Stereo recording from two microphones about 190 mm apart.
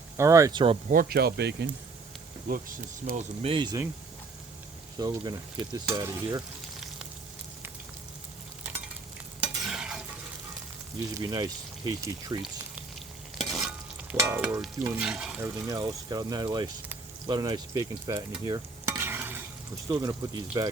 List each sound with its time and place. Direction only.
0.2 s speech: 15° right (ahead or behind)
0.9 s speech: 50° right (ahead or behind)
2.5 s speech: 50° right (ahead or behind)
3.2 s speech: 30° right (ahead or behind)
4.9 s speech: 20° right (ahead or behind)
9.4 s stir: 5° right (ahead or behind)
11.2 s speech: 20° right (ahead or behind)
13.4 s stir: centre (ahead or behind)
15.6 s speech: 20° right (ahead or behind)
18.4 s stir: 15° right (ahead or behind)
19.9 s speech: 20° right (ahead or behind)